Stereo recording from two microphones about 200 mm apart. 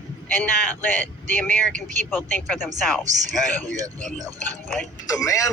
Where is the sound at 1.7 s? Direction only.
40° right (ahead or behind).